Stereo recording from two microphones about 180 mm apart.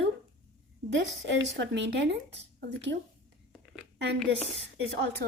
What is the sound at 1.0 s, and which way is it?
Speech, 80° right.